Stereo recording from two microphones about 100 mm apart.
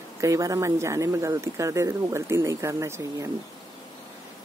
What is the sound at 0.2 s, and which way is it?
Speech, 35° right (ahead or behind).